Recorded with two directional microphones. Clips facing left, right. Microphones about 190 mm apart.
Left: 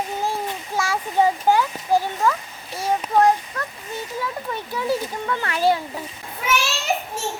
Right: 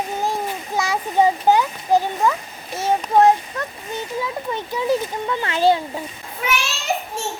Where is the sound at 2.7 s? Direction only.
25° right (ahead or behind).